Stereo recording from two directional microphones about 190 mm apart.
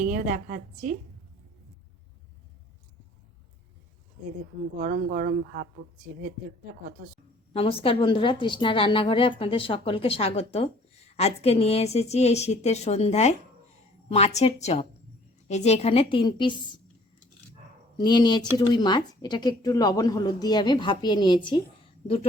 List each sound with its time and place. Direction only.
0.0 s a woman's voice: 45° right (ahead or behind)
4.8 s a woman's voice: 45° right (ahead or behind)
7.5 s speech: 30° left (ahead or behind)
17.9 s speech: 20° left (ahead or behind)